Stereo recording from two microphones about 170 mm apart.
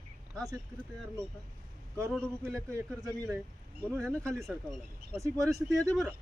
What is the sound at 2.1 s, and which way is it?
Speech, 5° left (ahead or behind).